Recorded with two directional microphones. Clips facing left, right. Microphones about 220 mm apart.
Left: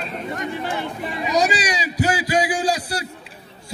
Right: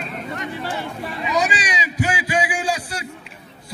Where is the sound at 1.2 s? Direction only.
40° left (ahead or behind).